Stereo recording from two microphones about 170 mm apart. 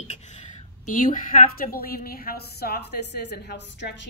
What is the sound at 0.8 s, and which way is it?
A woman's voice, 50° left (ahead or behind).